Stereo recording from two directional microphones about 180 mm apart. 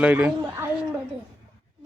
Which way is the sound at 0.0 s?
10° right (ahead or behind).